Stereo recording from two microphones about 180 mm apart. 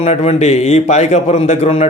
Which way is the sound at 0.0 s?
35° left (ahead or behind).